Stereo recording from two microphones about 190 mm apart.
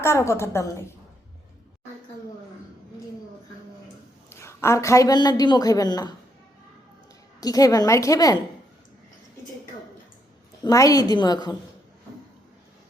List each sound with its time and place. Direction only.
0.0 s a woman's voice: 15° left (ahead or behind)
4.3 s a man's voice: 15° left (ahead or behind)
7.4 s a woman's voice: 20° left (ahead or behind)
10.6 s a woman's voice: 20° left (ahead or behind)